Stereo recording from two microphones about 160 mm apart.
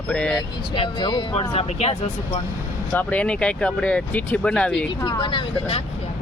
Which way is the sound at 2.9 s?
10° left (ahead or behind).